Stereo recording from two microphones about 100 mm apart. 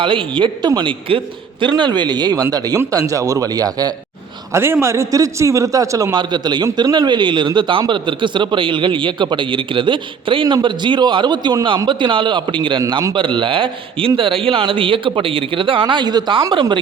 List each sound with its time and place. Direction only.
0.0 s a man's voice: 55° right (ahead or behind)
1.7 s a man's voice: 45° right (ahead or behind)
4.5 s a man's voice: 25° right (ahead or behind); by 16.8 s 50° right (ahead or behind)